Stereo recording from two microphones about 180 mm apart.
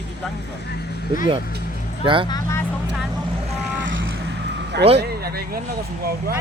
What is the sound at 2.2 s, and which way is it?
Speech, 20° left (ahead or behind).